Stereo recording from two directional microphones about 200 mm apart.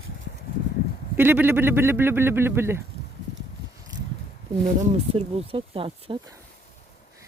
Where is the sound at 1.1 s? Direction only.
10° right (ahead or behind).